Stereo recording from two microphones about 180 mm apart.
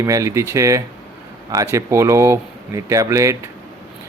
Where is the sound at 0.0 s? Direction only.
15° right (ahead or behind).